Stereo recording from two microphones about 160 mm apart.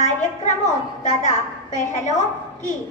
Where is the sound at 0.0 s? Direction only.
50° left (ahead or behind).